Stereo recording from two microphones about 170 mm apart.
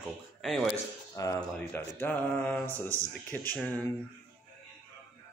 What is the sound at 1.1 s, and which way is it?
Speech, 20° left (ahead or behind).